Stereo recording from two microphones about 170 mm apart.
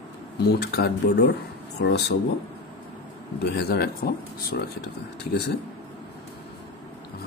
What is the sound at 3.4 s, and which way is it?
Speech, 65° left (ahead or behind).